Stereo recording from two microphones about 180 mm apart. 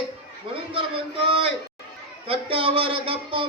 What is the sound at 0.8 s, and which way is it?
Speech, 30° right (ahead or behind).